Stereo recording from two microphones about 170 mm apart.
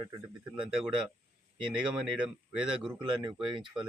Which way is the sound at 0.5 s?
5° right (ahead or behind).